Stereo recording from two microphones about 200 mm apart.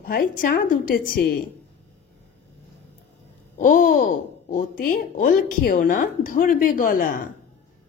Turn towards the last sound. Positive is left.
turn(degrees=45)  # may be behind; listen again after turning